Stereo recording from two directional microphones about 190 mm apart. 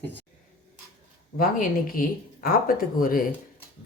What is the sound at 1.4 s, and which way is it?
Speech, 50° left (ahead or behind).